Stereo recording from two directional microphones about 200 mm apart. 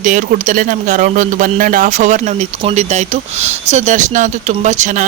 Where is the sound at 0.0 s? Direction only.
40° right (ahead or behind).